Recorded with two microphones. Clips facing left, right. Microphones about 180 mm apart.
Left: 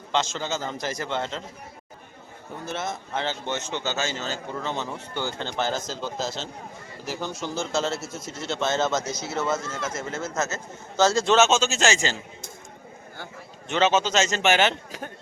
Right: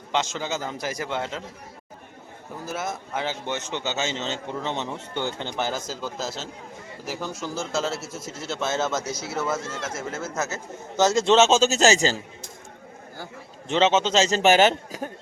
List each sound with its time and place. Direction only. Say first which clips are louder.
0.1 s a man's voice: even; 15° right (ahead or behind)
2.6 s a man's voice: even; 5° right (ahead or behind); by 12.2 s 35° right (ahead or behind)
13.7 s a man's voice: right 1 dB; 25° right (ahead or behind)